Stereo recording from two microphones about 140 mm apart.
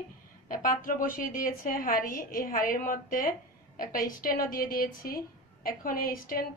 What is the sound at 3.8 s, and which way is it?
A woman's voice, 90° left.